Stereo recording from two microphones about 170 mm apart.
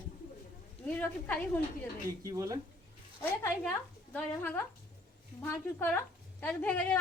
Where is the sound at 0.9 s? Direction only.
10° left (ahead or behind).